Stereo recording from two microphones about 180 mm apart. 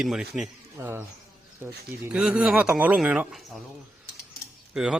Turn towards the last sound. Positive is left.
turn(degrees=-5)  # may be behind; listen again after turning